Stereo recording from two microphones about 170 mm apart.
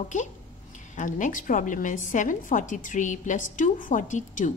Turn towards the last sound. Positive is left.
turn(degrees=50)  # may be behind; listen again after turning